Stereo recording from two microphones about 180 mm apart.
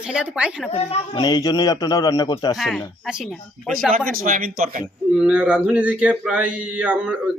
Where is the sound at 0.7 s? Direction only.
35° left (ahead or behind).